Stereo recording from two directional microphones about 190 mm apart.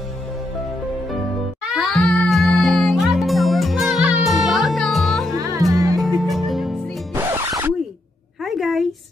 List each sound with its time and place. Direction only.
1.6 s music: centre (ahead or behind)
5.7 s music: 15° right (ahead or behind)
6.1 s music: centre (ahead or behind)
7.2 s music: 15° right (ahead or behind)
8.5 s a sound: centre (ahead or behind)